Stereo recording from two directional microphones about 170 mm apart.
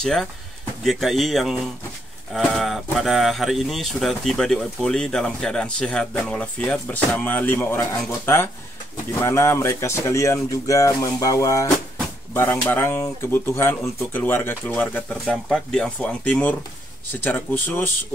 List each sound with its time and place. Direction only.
0.0 s speech: 5° left (ahead or behind)